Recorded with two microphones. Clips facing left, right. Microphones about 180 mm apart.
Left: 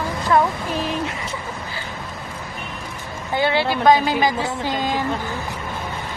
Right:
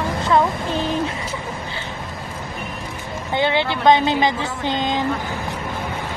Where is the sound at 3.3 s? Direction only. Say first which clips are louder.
Even; 20° right (ahead or behind).